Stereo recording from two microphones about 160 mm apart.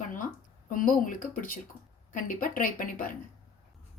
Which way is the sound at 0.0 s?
55° left (ahead or behind).